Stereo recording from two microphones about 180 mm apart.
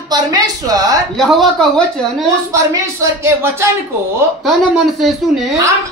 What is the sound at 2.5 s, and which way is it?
A man's voice, 15° right (ahead or behind).